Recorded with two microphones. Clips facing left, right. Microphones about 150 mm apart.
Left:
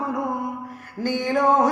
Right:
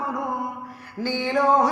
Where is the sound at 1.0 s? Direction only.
45° left (ahead or behind).